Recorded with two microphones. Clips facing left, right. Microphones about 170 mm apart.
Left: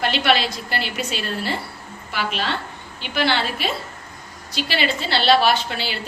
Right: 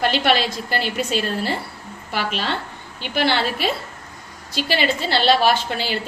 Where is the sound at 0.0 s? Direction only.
45° right (ahead or behind).